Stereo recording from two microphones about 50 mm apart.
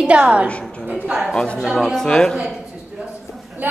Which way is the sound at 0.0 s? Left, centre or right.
Right.